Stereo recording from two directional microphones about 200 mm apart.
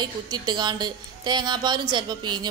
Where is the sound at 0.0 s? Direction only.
20° right (ahead or behind).